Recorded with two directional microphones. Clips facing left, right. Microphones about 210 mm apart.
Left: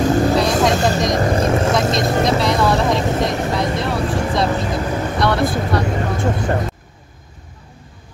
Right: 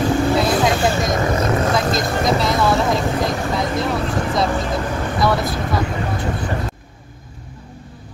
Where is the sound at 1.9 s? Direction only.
Centre (ahead or behind).